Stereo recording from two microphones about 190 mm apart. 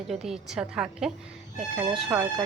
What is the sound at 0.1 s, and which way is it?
A woman's voice, centre (ahead or behind).